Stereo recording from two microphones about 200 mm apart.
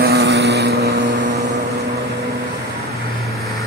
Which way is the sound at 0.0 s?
55° right (ahead or behind).